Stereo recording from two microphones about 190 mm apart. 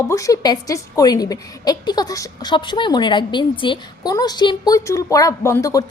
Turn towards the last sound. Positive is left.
turn(degrees=15)  # may be behind; listen again after turning